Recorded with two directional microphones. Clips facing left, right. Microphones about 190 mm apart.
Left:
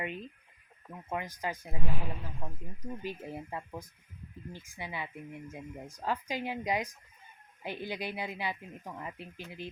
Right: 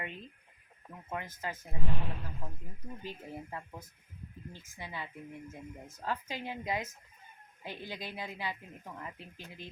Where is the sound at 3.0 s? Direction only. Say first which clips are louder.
Left 1 dB; 15° left (ahead or behind).